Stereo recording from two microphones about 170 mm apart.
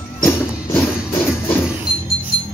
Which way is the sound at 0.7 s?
10° left (ahead or behind).